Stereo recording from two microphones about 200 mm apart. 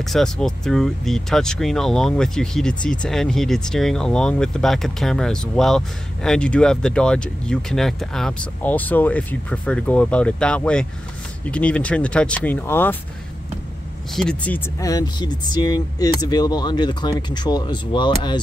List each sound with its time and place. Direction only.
0.0 s speech: centre (ahead or behind)
14.1 s speech: 5° left (ahead or behind); by 18.4 s 20° left (ahead or behind)